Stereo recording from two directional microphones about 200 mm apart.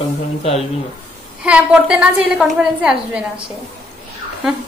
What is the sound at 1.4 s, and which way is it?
A woman's voice, 5° right (ahead or behind).